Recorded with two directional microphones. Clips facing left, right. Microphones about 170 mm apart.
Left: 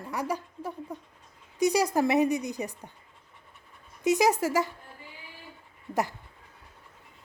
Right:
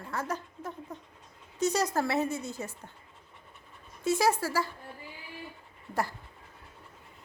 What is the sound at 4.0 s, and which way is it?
Speech, 20° left (ahead or behind).